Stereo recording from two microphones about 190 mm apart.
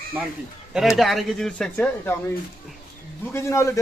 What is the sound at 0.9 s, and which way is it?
Speech, centre (ahead or behind).